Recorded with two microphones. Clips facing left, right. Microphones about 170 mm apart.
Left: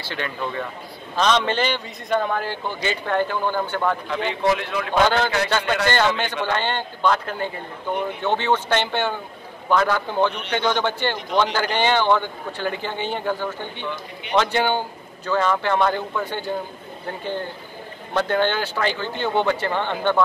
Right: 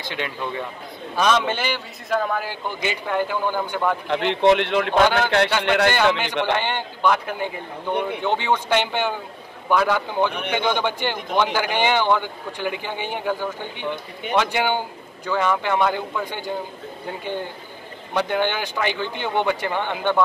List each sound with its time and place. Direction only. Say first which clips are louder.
0.0 s a man's voice: even; 15° right (ahead or behind)
4.5 s a man's voice: right 6 dB; 70° right (ahead or behind)
5.0 s a man's voice: left 3 dB; 10° right (ahead or behind)
5.6 s a man's voice: right 3 dB; 75° right (ahead or behind)
5.9 s a man's voice: right 1 dB; 10° right (ahead or behind)
18.1 s a man's voice: left 1 dB; 15° right (ahead or behind)